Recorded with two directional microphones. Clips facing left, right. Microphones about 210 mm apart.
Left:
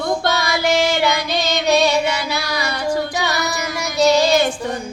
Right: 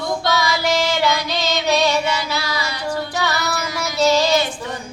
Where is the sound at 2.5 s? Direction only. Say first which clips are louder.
Left 3 dB; 55° left (ahead or behind).